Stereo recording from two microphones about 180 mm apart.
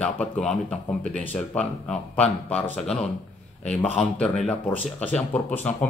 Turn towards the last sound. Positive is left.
turn(degrees=10)  # may be behind; listen again after turning